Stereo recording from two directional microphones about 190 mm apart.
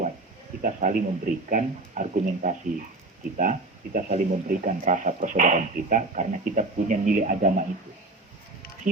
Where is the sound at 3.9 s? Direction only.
45° right (ahead or behind).